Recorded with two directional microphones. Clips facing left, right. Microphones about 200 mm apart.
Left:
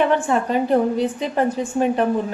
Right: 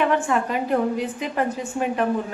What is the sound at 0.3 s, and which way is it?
A woman's voice, 30° left (ahead or behind).